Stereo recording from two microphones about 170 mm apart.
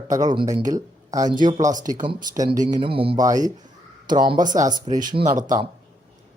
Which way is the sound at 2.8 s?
30° right (ahead or behind).